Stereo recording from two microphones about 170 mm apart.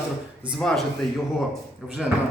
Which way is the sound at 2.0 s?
5° right (ahead or behind).